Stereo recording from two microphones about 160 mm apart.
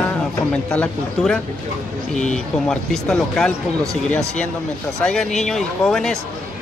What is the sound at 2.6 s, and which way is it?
Speech, 5° left (ahead or behind).